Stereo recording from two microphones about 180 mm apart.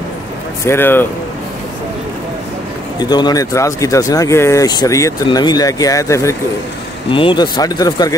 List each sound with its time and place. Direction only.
0.7 s speech: 10° left (ahead or behind)
3.0 s speech: 25° left (ahead or behind)
7.1 s speech: 30° left (ahead or behind)